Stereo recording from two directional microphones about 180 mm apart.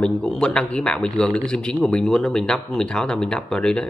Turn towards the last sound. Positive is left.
turn(degrees=5)  # may be behind; listen again after turning